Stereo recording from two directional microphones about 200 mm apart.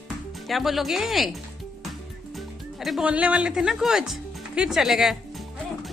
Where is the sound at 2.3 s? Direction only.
Centre (ahead or behind).